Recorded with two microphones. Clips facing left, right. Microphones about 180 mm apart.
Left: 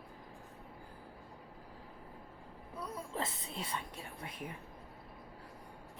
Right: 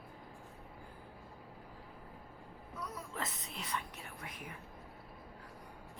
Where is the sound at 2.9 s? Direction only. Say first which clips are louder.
Left 4 dB; 30° left (ahead or behind).